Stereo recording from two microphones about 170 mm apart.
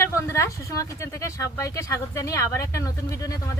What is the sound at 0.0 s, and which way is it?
Speech, 15° left (ahead or behind).